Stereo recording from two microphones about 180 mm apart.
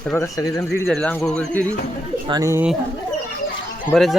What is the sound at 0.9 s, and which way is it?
Speech, 5° left (ahead or behind).